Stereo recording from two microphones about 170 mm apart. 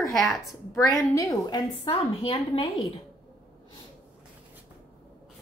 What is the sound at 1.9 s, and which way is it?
Speech, 30° left (ahead or behind).